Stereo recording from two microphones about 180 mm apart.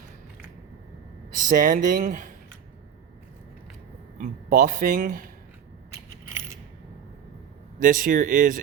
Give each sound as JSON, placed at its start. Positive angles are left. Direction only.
{"t": 1.4, "sound": "speech", "side_deg": -45}
{"t": 4.2, "sound": "speech", "side_deg": -50}
{"t": 7.8, "sound": "speech", "side_deg": -50}